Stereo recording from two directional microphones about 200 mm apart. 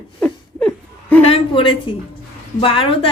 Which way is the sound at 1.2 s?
25° left (ahead or behind).